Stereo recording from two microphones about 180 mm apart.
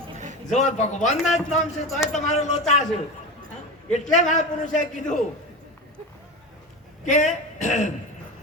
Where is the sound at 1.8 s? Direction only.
Centre (ahead or behind).